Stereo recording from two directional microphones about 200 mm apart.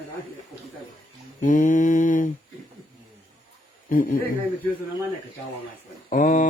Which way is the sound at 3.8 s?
45° left (ahead or behind).